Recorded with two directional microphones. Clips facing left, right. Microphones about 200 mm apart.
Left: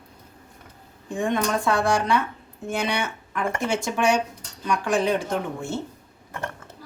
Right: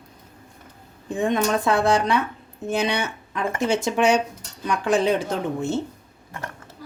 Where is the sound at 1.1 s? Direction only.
20° right (ahead or behind).